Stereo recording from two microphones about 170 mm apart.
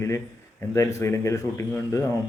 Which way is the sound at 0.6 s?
15° left (ahead or behind).